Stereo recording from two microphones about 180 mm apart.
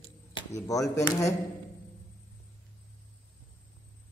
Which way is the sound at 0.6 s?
20° left (ahead or behind).